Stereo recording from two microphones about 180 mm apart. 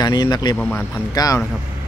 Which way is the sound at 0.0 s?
20° left (ahead or behind).